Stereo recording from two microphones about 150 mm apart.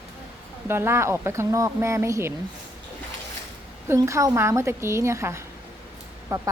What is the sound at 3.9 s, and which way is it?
Speech, 20° right (ahead or behind).